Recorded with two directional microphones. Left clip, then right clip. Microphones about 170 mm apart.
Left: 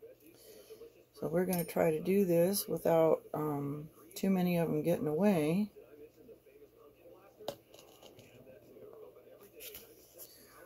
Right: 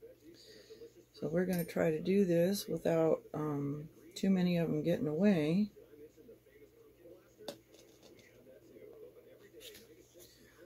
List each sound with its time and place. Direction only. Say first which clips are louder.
1.2 s speech: left 2 dB; 15° right (ahead or behind)
3.0 s speech: left 3 dB; 40° left (ahead or behind)
3.3 s speech: left 2 dB; 15° right (ahead or behind)